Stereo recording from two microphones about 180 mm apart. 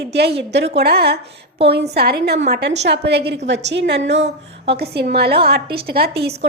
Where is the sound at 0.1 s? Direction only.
65° right (ahead or behind).